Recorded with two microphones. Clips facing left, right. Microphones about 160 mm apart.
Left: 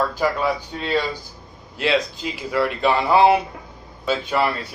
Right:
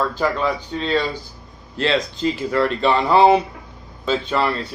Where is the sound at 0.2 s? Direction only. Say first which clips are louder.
Even; 10° left (ahead or behind).